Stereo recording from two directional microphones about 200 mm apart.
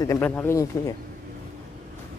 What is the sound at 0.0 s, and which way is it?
Speech, 15° left (ahead or behind).